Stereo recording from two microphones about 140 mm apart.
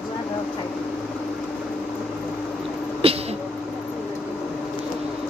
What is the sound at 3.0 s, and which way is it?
Speech, 45° right (ahead or behind).